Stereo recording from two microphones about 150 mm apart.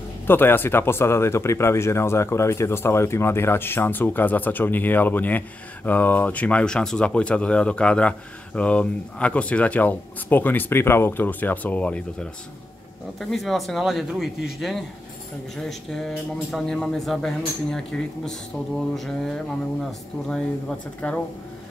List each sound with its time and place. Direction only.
0.3 s speech: 15° left (ahead or behind)
21.0 s speech: 5° left (ahead or behind)